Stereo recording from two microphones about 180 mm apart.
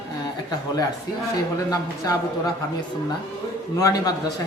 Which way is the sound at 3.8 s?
20° left (ahead or behind).